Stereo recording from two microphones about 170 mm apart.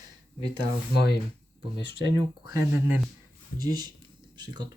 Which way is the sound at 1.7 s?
30° right (ahead or behind).